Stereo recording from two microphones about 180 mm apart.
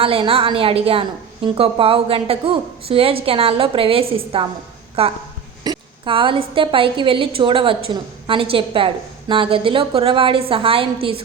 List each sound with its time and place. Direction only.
0.0 s a woman's voice: 30° right (ahead or behind)